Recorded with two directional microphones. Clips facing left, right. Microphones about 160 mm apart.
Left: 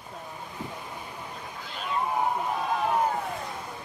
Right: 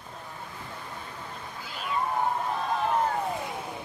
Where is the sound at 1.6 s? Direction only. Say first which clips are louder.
Left 1 dB; 5° right (ahead or behind).